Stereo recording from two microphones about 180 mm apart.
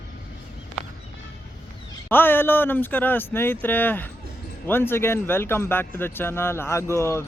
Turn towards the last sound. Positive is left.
turn(degrees=15)  # may be behind; listen again after turning